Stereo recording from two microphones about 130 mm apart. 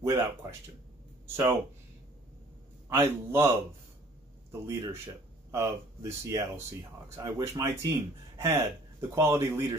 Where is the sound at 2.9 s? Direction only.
20° right (ahead or behind).